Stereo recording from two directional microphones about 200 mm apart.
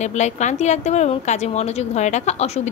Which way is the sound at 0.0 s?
35° left (ahead or behind).